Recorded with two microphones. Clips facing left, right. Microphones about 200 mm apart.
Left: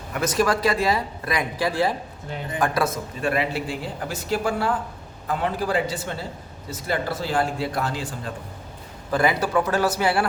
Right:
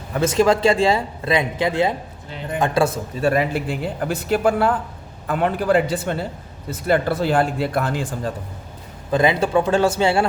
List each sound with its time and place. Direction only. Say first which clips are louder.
0.1 s a man's voice: right 5 dB; 25° right (ahead or behind); by 8.3 s 50° right (ahead or behind)
9.0 s a man's voice: right 4 dB; 20° right (ahead or behind)